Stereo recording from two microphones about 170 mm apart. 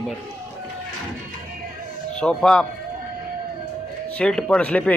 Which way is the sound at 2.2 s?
5° left (ahead or behind).